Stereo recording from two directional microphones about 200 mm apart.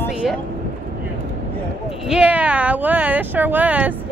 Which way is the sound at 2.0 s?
5° right (ahead or behind).